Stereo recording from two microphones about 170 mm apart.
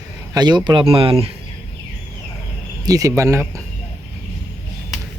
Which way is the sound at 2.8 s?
20° right (ahead or behind).